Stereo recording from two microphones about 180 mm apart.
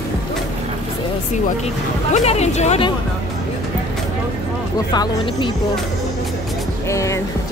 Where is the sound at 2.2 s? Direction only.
40° left (ahead or behind).